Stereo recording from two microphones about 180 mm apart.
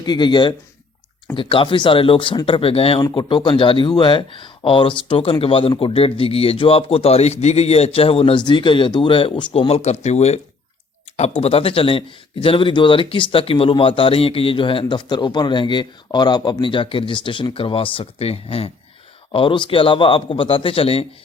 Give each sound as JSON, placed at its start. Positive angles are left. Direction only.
{"t": 0.0, "sound": "speech", "side_deg": 25}